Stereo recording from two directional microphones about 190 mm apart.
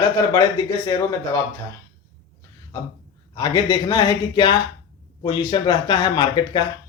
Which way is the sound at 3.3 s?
20° left (ahead or behind).